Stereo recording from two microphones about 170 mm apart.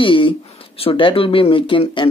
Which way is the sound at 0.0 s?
30° left (ahead or behind).